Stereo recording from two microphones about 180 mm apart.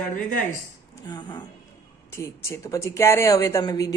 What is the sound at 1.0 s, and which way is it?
Speech, 25° left (ahead or behind).